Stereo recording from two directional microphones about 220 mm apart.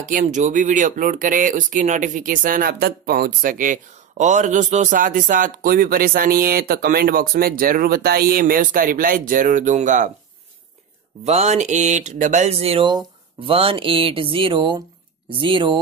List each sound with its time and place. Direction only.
0.0 s speech: 35° right (ahead or behind)
11.2 s speech: 30° right (ahead or behind)